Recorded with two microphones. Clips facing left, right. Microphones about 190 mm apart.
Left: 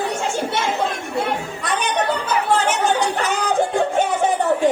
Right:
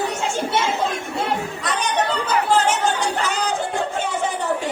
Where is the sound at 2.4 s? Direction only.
60° left (ahead or behind).